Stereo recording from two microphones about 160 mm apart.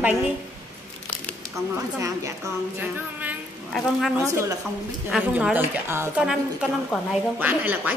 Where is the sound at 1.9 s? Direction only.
20° right (ahead or behind).